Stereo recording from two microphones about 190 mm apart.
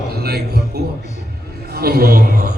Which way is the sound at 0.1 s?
55° right (ahead or behind).